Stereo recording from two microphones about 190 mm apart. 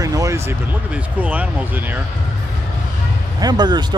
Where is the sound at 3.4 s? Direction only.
20° right (ahead or behind).